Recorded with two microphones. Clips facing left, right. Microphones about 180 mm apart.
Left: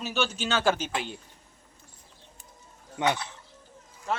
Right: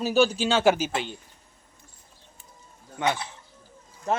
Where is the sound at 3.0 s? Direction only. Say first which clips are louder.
Even; 20° left (ahead or behind).